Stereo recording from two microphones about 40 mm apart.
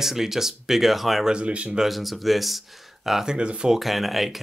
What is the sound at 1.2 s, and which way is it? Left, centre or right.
Speech, right.